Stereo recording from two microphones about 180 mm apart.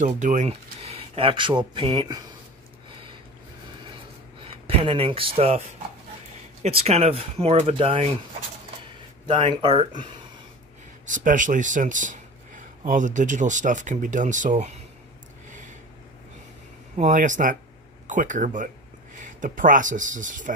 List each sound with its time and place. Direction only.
0.0 s speech: 45° right (ahead or behind); by 2.1 s 30° right (ahead or behind)
4.4 s speech: 30° right (ahead or behind)
6.6 s speech: 35° right (ahead or behind)
9.2 s speech: 25° right (ahead or behind)
11.1 s speech: 45° right (ahead or behind)
16.9 s speech: 40° right (ahead or behind)